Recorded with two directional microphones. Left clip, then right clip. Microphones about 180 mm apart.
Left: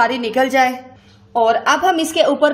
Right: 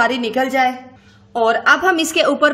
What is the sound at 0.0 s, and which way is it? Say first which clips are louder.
A woman's voice: left 1 dB; 15° right (ahead or behind).